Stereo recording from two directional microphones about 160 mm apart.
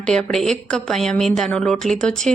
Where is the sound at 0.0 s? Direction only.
5° left (ahead or behind).